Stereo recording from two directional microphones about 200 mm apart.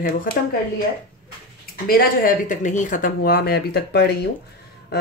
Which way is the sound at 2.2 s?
40° left (ahead or behind).